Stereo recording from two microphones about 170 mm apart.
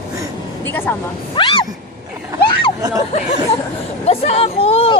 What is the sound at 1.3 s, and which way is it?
Speech, 30° left (ahead or behind).